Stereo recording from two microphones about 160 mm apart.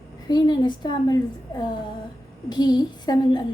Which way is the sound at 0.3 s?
25° left (ahead or behind).